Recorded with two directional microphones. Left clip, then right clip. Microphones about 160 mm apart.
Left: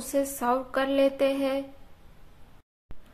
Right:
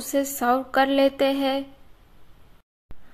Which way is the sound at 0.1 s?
25° right (ahead or behind).